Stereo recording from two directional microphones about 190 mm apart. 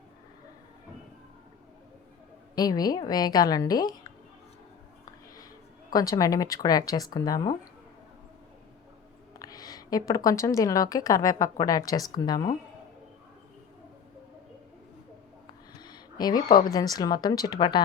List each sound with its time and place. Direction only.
2.6 s a woman's voice: 20° left (ahead or behind)
5.9 s a woman's voice: 20° left (ahead or behind)
9.4 s a woman's voice: 20° left (ahead or behind)
15.8 s a sound: 20° left (ahead or behind)
16.7 s a woman's voice: 20° left (ahead or behind)